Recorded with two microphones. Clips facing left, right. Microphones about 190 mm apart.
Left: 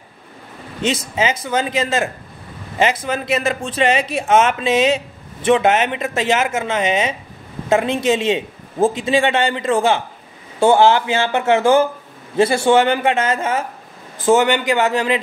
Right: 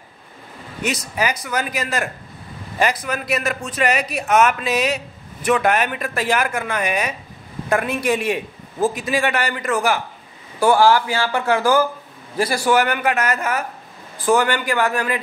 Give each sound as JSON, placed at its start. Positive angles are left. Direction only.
{"t": 0.8, "sound": "a man's voice", "side_deg": 25}